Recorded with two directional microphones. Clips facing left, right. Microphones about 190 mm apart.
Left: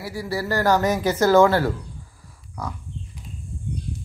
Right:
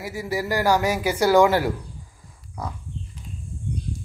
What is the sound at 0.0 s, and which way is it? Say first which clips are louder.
Speech: even; 15° right (ahead or behind).